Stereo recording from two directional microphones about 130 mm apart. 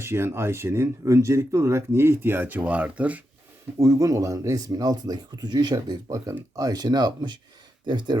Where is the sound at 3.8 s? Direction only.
25° right (ahead or behind).